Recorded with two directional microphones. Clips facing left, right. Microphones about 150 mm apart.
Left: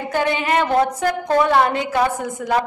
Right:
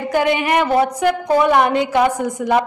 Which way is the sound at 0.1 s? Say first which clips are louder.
Right 3 dB; 15° right (ahead or behind).